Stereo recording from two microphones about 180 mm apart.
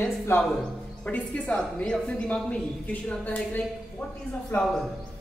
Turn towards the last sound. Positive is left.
turn(degrees=0)  # may be behind; listen again after turning